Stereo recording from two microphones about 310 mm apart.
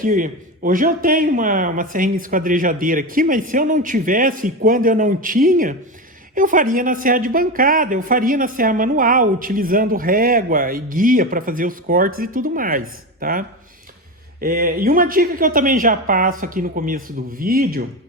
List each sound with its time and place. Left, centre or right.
0.0 s a man's voice: right
14.4 s a man's voice: right